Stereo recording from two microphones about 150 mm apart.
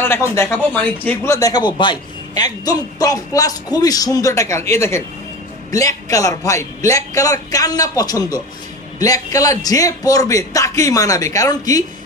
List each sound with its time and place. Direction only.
0.0 s a man's voice: 15° left (ahead or behind)